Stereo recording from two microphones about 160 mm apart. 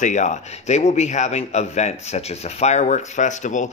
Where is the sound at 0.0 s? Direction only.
50° left (ahead or behind).